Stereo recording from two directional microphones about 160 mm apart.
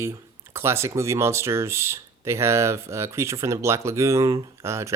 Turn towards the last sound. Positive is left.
turn(degrees=-15)  # may be behind; listen again after turning